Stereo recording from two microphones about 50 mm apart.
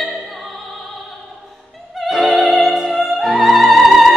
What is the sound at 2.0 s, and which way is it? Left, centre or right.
Music, centre.